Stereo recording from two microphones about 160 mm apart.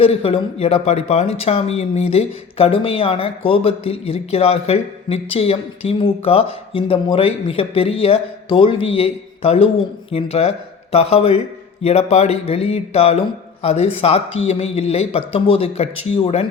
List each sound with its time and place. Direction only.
0.0 s speech: 35° left (ahead or behind)